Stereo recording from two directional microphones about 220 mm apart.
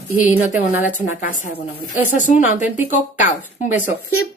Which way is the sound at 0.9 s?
35° left (ahead or behind).